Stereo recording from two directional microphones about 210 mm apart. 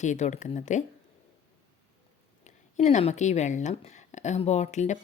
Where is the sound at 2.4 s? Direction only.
35° left (ahead or behind).